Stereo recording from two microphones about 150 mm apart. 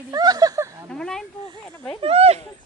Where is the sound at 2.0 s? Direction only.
40° right (ahead or behind).